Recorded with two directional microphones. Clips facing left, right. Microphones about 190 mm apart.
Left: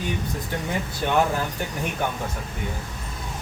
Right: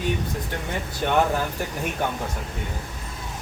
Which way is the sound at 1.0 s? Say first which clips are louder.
Right 1 dB; centre (ahead or behind).